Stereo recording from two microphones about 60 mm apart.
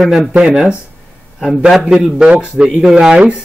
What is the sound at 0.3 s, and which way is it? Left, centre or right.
A man's voice, centre.